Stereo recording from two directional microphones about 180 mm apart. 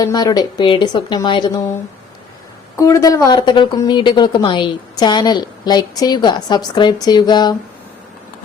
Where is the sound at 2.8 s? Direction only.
20° left (ahead or behind).